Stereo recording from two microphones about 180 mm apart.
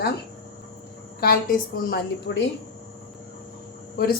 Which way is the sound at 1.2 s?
55° left (ahead or behind).